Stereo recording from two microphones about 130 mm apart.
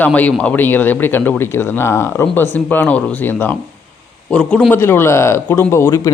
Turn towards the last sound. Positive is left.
turn(degrees=25)  # may be behind; listen again after turning